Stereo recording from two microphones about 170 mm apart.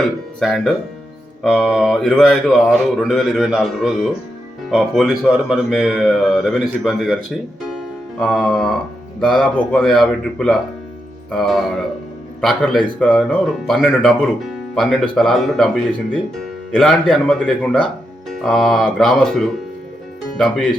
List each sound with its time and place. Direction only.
0.0 s a man's voice: centre (ahead or behind)